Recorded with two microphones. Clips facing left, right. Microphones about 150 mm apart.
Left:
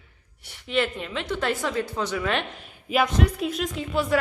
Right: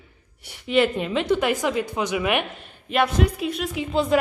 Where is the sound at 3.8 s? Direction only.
20° right (ahead or behind).